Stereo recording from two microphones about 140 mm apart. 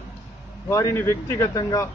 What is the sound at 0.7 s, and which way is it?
A man's voice, 20° left (ahead or behind).